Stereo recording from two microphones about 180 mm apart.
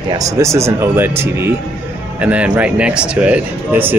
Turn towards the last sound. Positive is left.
turn(degrees=-10)  # may be behind; listen again after turning